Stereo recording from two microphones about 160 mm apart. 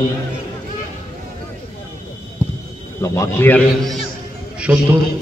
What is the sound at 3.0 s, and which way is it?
Speech, 15° left (ahead or behind).